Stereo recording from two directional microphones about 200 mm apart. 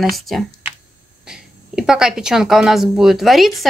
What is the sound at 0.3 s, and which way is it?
Speech, centre (ahead or behind).